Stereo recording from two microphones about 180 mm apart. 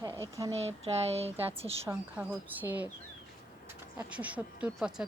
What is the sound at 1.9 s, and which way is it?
Speech, 10° right (ahead or behind).